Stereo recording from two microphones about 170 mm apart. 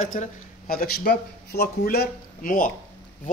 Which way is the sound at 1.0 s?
70° left (ahead or behind).